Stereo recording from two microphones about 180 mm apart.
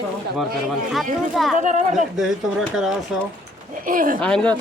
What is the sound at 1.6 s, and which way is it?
Speech, 45° right (ahead or behind).